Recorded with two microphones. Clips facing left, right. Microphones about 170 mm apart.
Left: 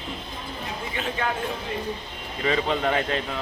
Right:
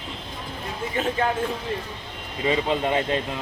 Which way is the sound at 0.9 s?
40° right (ahead or behind).